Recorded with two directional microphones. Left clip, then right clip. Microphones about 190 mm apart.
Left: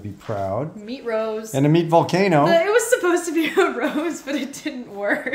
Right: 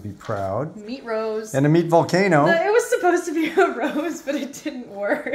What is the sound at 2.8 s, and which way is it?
A woman's voice, 15° left (ahead or behind).